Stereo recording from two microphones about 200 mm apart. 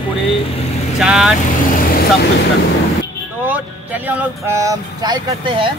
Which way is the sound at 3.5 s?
10° right (ahead or behind).